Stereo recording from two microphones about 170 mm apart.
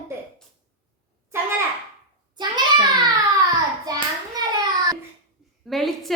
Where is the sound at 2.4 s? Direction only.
25° right (ahead or behind).